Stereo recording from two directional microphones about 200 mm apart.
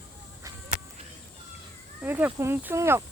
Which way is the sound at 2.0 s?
10° right (ahead or behind).